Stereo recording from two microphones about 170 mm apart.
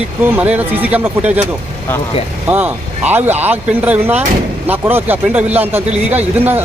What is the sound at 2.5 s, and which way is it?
A man's voice, 10° right (ahead or behind).